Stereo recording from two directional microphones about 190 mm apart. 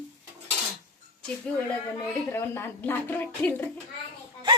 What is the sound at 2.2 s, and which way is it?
Speech, 10° left (ahead or behind).